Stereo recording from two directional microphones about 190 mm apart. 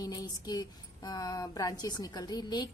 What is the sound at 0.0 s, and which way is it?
A woman's voice, 20° left (ahead or behind).